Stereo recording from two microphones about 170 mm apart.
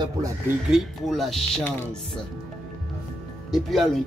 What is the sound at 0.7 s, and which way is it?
Speech, centre (ahead or behind).